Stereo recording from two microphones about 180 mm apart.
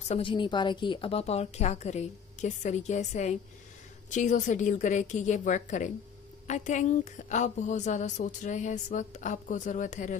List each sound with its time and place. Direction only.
0.1 s a woman's voice: 30° left (ahead or behind)